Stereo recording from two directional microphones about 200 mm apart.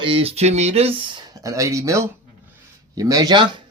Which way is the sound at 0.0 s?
25° right (ahead or behind).